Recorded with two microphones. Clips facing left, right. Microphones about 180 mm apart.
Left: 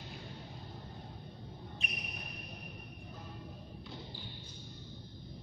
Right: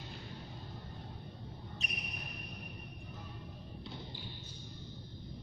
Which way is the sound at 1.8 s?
40° right (ahead or behind).